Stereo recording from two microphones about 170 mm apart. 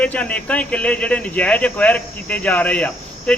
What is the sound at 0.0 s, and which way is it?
Speech, 10° left (ahead or behind).